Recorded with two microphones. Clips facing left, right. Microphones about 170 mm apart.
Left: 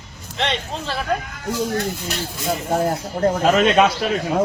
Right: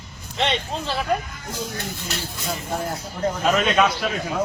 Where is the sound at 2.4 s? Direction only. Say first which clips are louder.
Left 8 dB; 50° left (ahead or behind).